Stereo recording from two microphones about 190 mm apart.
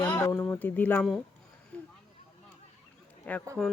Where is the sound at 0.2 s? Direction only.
15° left (ahead or behind).